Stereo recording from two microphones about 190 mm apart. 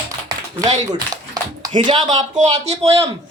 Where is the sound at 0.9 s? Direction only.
20° right (ahead or behind).